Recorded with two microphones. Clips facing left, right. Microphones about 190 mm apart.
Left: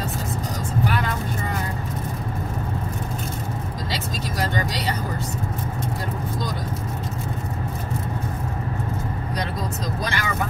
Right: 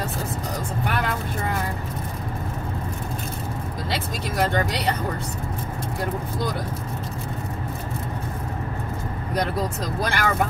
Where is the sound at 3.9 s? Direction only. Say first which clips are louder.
Right 2 dB; 55° right (ahead or behind).